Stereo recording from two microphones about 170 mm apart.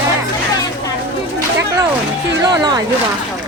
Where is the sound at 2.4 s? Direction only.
20° right (ahead or behind).